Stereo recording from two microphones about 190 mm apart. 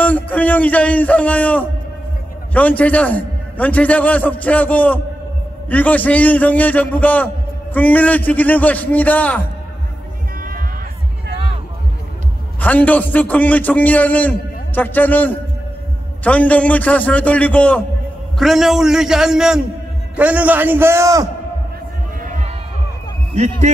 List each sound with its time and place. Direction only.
0.0 s a man's voice: 10° left (ahead or behind)
12.5 s a man's voice: 10° left (ahead or behind); by 21.3 s 15° right (ahead or behind)
22.2 s crowd: 45° right (ahead or behind)